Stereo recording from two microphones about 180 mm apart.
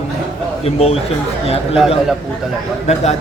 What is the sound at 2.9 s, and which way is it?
Speech, 40° left (ahead or behind).